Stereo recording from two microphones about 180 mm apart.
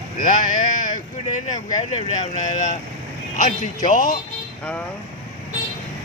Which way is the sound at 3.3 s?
45° left (ahead or behind).